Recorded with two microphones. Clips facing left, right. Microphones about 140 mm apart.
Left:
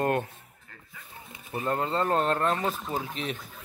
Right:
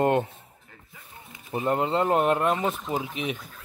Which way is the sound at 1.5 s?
20° right (ahead or behind).